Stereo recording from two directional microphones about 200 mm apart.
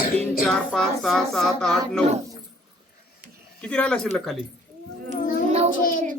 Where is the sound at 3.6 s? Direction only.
5° left (ahead or behind).